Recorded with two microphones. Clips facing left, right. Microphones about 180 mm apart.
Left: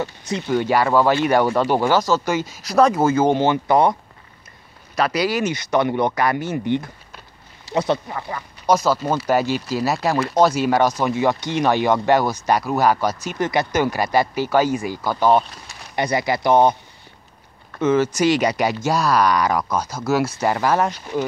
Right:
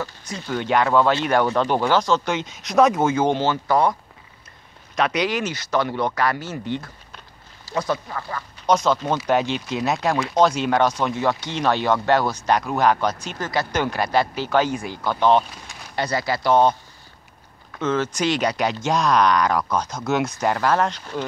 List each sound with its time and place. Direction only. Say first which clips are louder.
0.0 s speech: left 6 dB; 20° left (ahead or behind)
0.5 s speech: left 2 dB; 5° left (ahead or behind)
3.3 s speech: left 3 dB; 20° left (ahead or behind)
4.9 s speech: left 2 dB; 5° left (ahead or behind)
7.7 s speech: left 4 dB; 20° left (ahead or behind)
17.7 s speech: left 5 dB; 10° left (ahead or behind)